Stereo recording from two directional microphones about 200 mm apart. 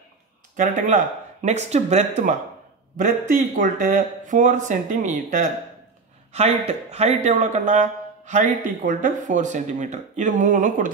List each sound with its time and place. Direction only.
0.6 s a man's voice: 35° right (ahead or behind)
6.9 s a man's voice: 35° right (ahead or behind)